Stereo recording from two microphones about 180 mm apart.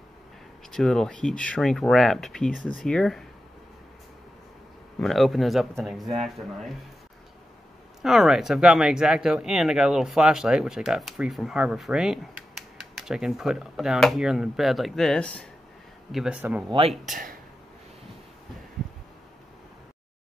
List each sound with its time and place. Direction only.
0.7 s speech: 5° left (ahead or behind)
4.9 s speech: centre (ahead or behind)
8.0 s speech: centre (ahead or behind)
17.0 s speech: 50° right (ahead or behind)